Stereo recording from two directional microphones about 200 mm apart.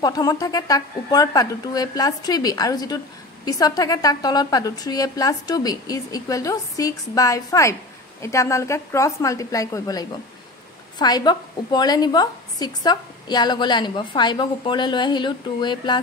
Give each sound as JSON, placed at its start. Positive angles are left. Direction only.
{"t": 0.0, "sound": "a woman's voice", "side_deg": 20}